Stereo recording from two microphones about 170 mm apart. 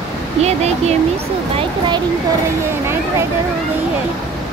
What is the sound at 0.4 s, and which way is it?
Speech, 40° right (ahead or behind).